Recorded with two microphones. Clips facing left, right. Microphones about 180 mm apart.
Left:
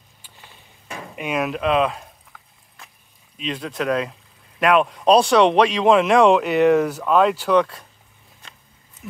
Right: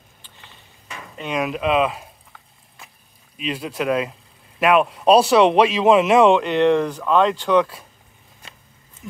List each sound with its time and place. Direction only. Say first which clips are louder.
0.8 s a sound: left 4 dB; 40° left (ahead or behind)
1.1 s speech: even; 5° left (ahead or behind)
3.3 s speech: right 1 dB; 5° right (ahead or behind)